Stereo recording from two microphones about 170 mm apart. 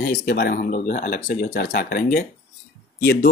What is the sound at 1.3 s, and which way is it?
Speech, 60° left (ahead or behind).